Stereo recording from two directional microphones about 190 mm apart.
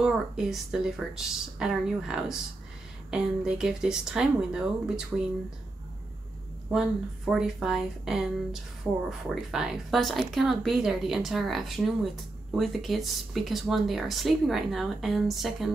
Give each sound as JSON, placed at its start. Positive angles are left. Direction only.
{"t": 0.0, "sound": "speech", "side_deg": -5}
{"t": 6.7, "sound": "speech", "side_deg": -5}